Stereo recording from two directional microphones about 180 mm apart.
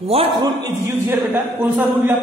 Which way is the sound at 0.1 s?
30° right (ahead or behind).